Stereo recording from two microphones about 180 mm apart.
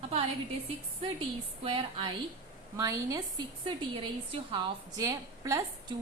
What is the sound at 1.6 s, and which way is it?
Speech, 30° right (ahead or behind).